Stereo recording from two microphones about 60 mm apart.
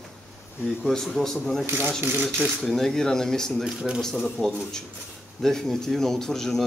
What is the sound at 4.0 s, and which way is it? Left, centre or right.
Speech, centre.